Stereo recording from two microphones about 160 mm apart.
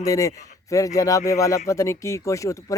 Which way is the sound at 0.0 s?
20° left (ahead or behind).